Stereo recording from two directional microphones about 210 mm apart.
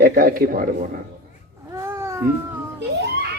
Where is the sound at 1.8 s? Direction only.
10° right (ahead or behind).